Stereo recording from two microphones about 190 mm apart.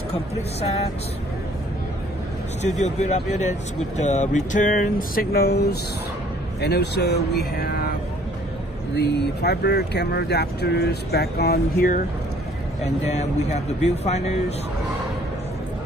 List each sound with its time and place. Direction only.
2.6 s speech: 35° left (ahead or behind); by 7.9 s 55° left (ahead or behind)
8.9 s speech: 60° left (ahead or behind)
13.0 s speech: 35° left (ahead or behind)